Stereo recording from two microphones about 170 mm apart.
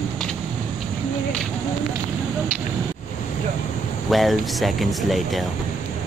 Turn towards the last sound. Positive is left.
turn(degrees=0)  # may be behind; listen again after turning